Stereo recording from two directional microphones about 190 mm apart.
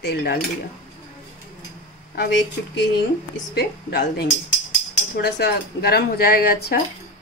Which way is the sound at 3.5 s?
60° left (ahead or behind).